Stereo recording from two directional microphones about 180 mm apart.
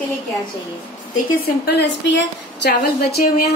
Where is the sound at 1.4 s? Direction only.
65° left (ahead or behind).